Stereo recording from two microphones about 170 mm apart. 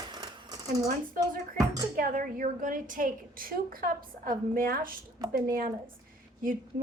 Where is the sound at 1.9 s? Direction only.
55° right (ahead or behind).